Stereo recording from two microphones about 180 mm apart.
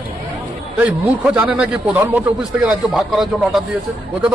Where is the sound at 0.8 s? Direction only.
10° right (ahead or behind).